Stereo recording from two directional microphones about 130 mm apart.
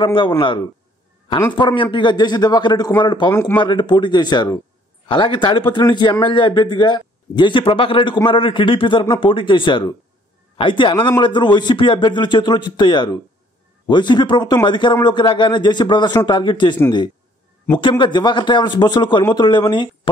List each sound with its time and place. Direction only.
0.0 s a man's voice: 40° left (ahead or behind)
17.7 s a man's voice: 40° left (ahead or behind)